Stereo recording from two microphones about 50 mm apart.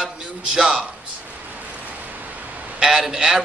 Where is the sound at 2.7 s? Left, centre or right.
Centre.